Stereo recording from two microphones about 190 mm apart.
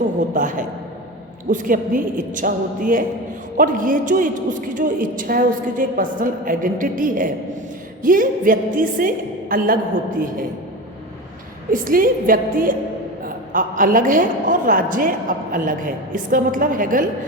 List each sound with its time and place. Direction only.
0.2 s a sound: 40° right (ahead or behind)
1.5 s a woman's voice: 45° right (ahead or behind)
11.7 s a woman's voice: 45° right (ahead or behind)